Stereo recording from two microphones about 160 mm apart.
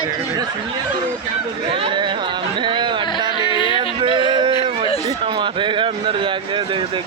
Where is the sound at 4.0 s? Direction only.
30° right (ahead or behind).